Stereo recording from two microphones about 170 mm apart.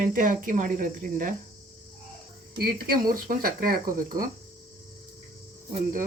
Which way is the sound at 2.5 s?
60° right (ahead or behind).